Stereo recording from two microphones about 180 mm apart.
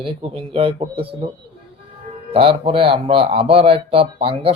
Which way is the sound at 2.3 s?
30° right (ahead or behind).